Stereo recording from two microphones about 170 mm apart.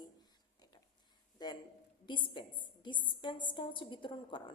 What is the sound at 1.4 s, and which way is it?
A woman's voice, 25° left (ahead or behind).